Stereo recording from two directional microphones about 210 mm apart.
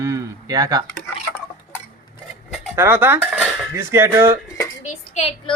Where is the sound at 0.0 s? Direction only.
15° right (ahead or behind).